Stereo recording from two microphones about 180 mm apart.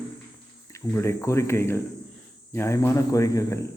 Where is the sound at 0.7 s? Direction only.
15° left (ahead or behind).